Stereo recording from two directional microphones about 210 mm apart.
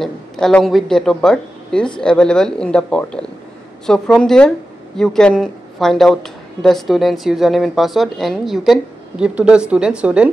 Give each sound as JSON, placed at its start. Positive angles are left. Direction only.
{"t": 0.0, "sound": "speech", "side_deg": 5}